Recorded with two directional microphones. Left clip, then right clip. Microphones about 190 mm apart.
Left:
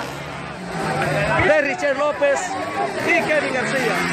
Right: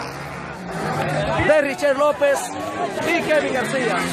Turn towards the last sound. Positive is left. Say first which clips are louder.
# even
turn(degrees=-10)  # may be behind; listen again after turning